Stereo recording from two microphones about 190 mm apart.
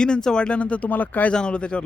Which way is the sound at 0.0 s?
5° left (ahead or behind).